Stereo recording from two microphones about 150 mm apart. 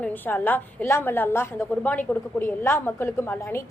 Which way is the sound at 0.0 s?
10° left (ahead or behind).